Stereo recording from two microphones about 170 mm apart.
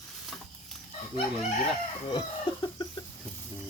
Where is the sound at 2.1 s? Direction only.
25° left (ahead or behind).